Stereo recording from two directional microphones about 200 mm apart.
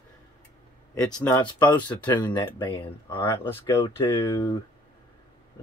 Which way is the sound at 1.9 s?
20° left (ahead or behind).